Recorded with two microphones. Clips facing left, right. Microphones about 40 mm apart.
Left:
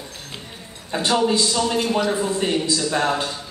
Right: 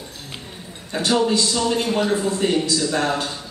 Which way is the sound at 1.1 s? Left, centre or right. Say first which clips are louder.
Even; centre.